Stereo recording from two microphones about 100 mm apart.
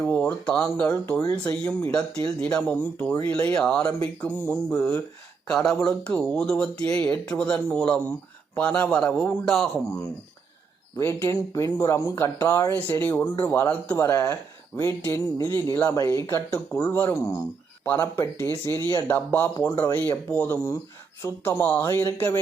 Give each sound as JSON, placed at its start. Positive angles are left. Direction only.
{"t": 0.0, "sound": "speech", "side_deg": 15}
{"t": 0.9, "sound": "speech", "side_deg": 30}
{"t": 1.5, "sound": "speech", "side_deg": 10}
{"t": 3.0, "sound": "speech", "side_deg": 20}
{"t": 3.2, "sound": "speech", "side_deg": 10}
{"t": 5.5, "sound": "speech", "side_deg": 5}
{"t": 10.9, "sound": "speech", "side_deg": 30}